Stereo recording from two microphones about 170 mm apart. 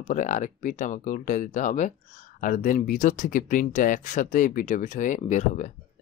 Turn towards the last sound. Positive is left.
turn(degrees=45)  # may be behind; listen again after turning